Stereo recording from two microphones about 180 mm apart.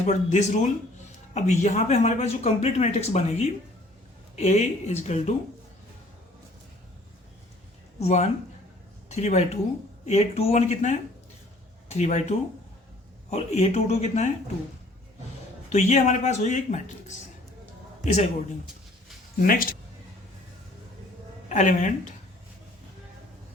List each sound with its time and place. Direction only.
0.0 s speech: 40° left (ahead or behind)
7.9 s speech: 40° left (ahead or behind)
15.7 s speech: 40° left (ahead or behind)
18.0 s speech: 40° left (ahead or behind)
19.4 s speech: 55° left (ahead or behind)
21.5 s speech: 45° left (ahead or behind)